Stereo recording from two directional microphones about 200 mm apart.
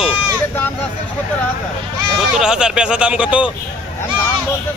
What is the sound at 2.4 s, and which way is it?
Speech, 5° right (ahead or behind).